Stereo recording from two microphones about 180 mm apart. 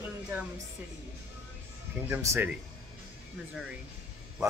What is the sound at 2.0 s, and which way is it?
Speech, 15° right (ahead or behind).